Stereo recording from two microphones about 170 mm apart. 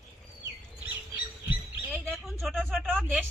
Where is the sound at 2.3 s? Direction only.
Centre (ahead or behind).